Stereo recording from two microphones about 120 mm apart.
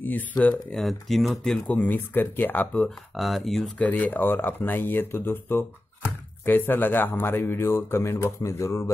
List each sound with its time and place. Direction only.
0.4 s speech: 10° left (ahead or behind)
3.2 s speech: centre (ahead or behind)
3.8 s speech: 15° left (ahead or behind)